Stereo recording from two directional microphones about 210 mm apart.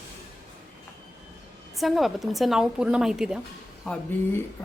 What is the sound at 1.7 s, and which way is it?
Speech, centre (ahead or behind).